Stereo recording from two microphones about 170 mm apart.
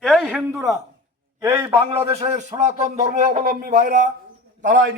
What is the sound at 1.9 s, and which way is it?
A man's voice, 30° right (ahead or behind).